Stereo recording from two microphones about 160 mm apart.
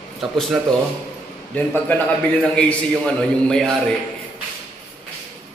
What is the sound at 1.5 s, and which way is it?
A man's voice, 10° left (ahead or behind).